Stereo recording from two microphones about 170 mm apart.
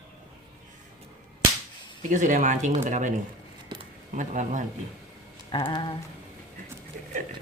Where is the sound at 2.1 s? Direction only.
45° right (ahead or behind).